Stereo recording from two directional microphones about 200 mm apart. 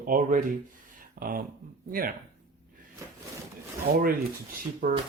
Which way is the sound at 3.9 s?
45° right (ahead or behind).